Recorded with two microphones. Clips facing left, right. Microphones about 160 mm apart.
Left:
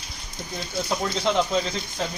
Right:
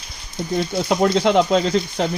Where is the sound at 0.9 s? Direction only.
70° right (ahead or behind).